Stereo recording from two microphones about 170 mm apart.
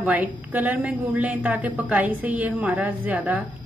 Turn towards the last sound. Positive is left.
turn(degrees=-10)  # may be behind; listen again after turning